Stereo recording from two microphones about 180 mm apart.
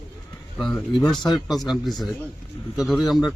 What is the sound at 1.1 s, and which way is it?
Speech, centre (ahead or behind).